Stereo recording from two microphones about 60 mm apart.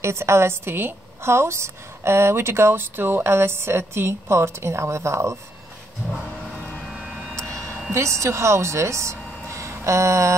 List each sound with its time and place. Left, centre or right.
0.0 s a woman's voice: right
6.9 s vehicle: centre
7.3 s vehicle: right
7.9 s speech: right